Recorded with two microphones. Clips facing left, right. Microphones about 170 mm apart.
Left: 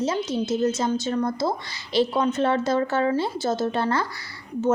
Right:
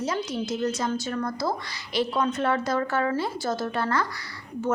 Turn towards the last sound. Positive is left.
turn(degrees=25)  # may be behind; listen again after turning